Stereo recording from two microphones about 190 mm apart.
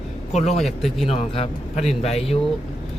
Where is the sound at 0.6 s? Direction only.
Centre (ahead or behind).